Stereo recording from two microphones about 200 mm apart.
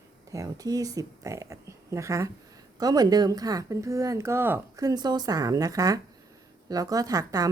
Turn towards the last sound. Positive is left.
turn(degrees=-15)  # may be behind; listen again after turning